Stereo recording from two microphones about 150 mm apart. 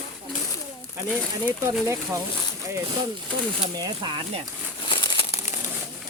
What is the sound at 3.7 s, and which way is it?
Speech, 30° right (ahead or behind).